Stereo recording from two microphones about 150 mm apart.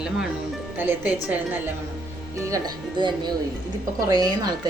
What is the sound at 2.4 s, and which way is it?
Speech, 25° right (ahead or behind).